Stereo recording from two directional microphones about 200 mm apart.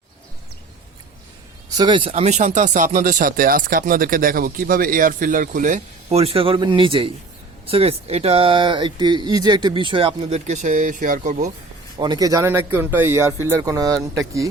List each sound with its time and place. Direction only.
1.7 s speech: 20° right (ahead or behind); by 11.5 s 35° right (ahead or behind)
11.9 s speech: 20° right (ahead or behind)